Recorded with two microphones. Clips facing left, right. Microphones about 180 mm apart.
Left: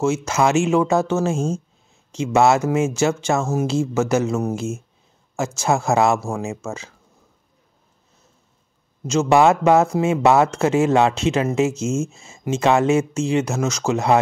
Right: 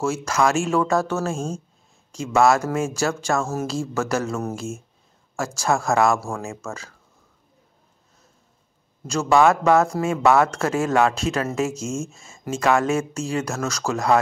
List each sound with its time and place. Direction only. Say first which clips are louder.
0.0 s speech: left 2 dB; 20° left (ahead or behind)
9.0 s speech: left 2 dB; 20° left (ahead or behind)